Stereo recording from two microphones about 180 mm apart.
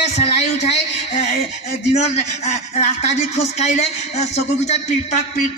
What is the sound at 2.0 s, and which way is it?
Speech, 40° left (ahead or behind).